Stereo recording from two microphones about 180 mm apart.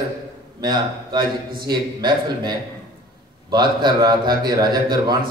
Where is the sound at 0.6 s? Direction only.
25° right (ahead or behind).